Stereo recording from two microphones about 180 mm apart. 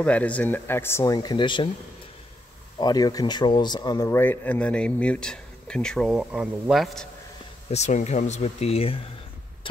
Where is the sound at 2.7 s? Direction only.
20° left (ahead or behind); by 7.0 s centre (ahead or behind).